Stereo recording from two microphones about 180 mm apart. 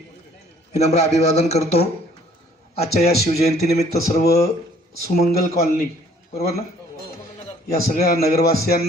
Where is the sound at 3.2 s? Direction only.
35° left (ahead or behind).